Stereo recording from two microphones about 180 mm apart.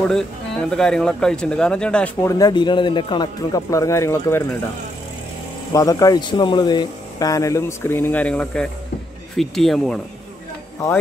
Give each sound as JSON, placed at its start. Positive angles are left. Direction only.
{"t": 0.1, "sound": "speech", "side_deg": 5}
{"t": 2.2, "sound": "speech", "side_deg": 20}
{"t": 5.7, "sound": "speech", "side_deg": 20}